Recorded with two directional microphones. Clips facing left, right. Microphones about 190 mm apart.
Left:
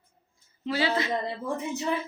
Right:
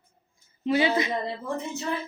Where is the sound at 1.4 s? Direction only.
15° left (ahead or behind).